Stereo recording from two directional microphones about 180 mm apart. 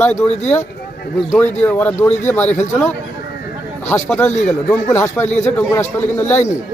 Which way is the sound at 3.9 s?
10° left (ahead or behind).